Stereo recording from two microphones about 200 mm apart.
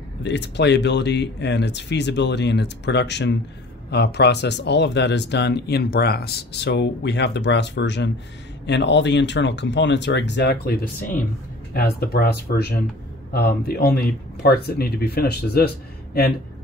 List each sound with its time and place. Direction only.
0.2 s speech: 60° left (ahead or behind)